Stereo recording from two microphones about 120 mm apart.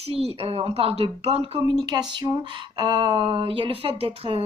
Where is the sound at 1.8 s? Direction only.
40° right (ahead or behind).